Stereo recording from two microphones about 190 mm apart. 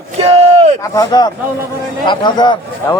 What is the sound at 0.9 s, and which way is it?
Speech, 20° left (ahead or behind).